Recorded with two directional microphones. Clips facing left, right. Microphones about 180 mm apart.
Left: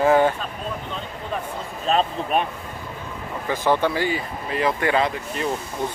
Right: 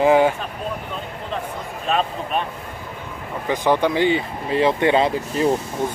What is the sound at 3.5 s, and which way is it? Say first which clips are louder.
Speech: right 2 dB; 15° right (ahead or behind).